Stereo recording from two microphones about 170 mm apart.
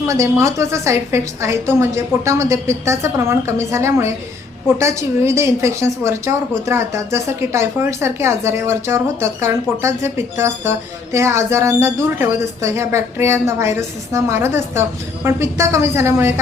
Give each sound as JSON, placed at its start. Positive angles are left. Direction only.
{"t": 0.1, "sound": "a woman's voice", "side_deg": -15}